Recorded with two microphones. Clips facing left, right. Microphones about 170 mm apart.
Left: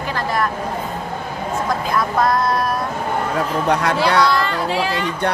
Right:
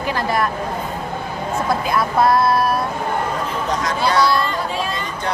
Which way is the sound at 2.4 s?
10° right (ahead or behind).